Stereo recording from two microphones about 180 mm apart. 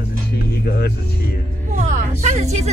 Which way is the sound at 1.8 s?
40° right (ahead or behind).